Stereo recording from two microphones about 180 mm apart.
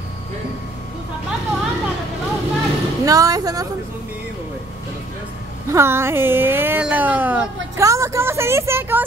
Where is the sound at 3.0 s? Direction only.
20° right (ahead or behind).